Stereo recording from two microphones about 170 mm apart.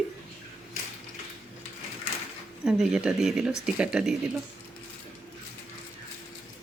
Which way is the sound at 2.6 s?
5° right (ahead or behind).